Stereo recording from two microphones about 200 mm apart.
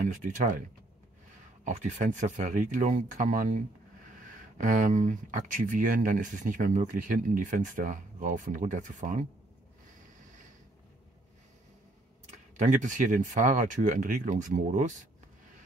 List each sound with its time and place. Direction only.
0.0 s speech: 40° right (ahead or behind)
12.5 s speech: 40° right (ahead or behind)